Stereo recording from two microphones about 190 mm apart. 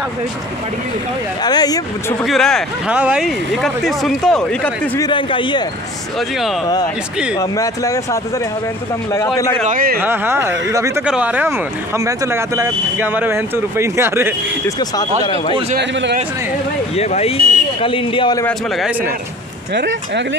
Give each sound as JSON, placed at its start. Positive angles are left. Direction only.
{"t": 1.4, "sound": "speech", "side_deg": 20}
{"t": 2.2, "sound": "speech", "side_deg": 0}
{"t": 5.0, "sound": "speech", "side_deg": 25}
{"t": 7.3, "sound": "speech", "side_deg": 20}
{"t": 9.7, "sound": "speech", "side_deg": -50}
{"t": 9.9, "sound": "speech", "side_deg": -10}
{"t": 15.8, "sound": "speech", "side_deg": -70}
{"t": 16.9, "sound": "speech", "side_deg": 35}
{"t": 18.8, "sound": "speech", "side_deg": -5}
{"t": 19.7, "sound": "speech", "side_deg": -65}